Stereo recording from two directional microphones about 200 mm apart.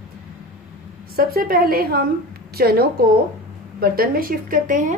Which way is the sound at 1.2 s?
50° right (ahead or behind).